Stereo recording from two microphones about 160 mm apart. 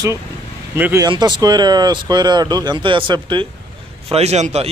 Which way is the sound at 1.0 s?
25° right (ahead or behind).